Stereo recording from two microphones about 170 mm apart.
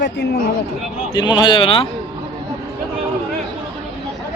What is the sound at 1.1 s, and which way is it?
Speech, 25° left (ahead or behind).